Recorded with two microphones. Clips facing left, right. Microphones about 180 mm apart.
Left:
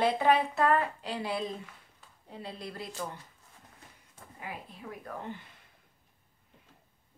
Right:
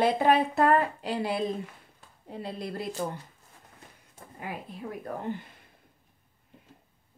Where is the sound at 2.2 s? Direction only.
50° right (ahead or behind).